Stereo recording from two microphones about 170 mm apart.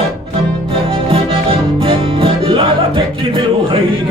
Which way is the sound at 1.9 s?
30° right (ahead or behind).